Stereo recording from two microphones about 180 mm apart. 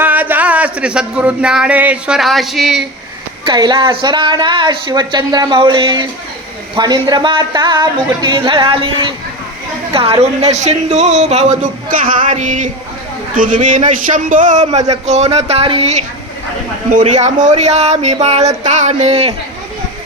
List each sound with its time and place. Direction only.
0.0 s speech: 10° right (ahead or behind)
3.4 s a woman's voice: 25° right (ahead or behind)